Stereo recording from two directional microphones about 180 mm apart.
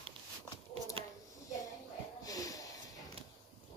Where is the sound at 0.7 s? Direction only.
35° right (ahead or behind).